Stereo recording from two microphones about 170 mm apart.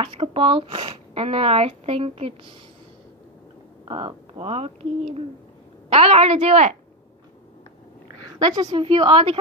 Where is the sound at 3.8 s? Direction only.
30° right (ahead or behind).